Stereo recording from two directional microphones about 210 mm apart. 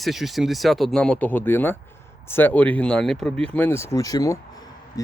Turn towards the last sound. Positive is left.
turn(degrees=15)  # may be behind; listen again after turning